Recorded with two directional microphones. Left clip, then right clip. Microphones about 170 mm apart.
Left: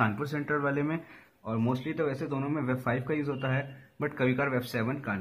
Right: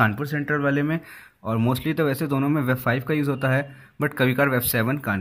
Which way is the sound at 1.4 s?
40° right (ahead or behind).